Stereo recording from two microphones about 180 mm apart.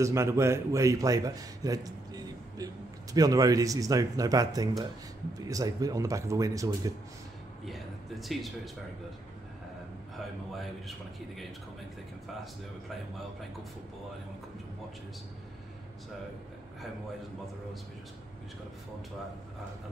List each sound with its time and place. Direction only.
0.0 s speech: 15° right (ahead or behind)
7.6 s a sound: centre (ahead or behind)
10.5 s a man's voice: centre (ahead or behind)